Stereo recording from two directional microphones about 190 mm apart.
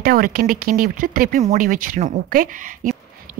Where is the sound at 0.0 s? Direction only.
50° right (ahead or behind).